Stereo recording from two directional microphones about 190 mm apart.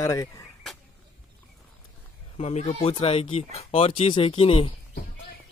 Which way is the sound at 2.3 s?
35° left (ahead or behind).